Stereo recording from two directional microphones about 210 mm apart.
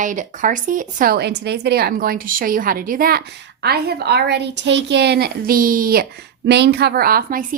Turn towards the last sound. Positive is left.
turn(degrees=-45)  # may be behind; listen again after turning